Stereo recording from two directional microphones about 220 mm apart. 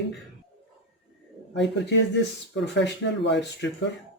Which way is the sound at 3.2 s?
55° left (ahead or behind).